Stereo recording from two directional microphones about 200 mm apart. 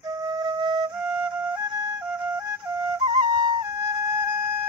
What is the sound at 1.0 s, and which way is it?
Flute, 5° right (ahead or behind).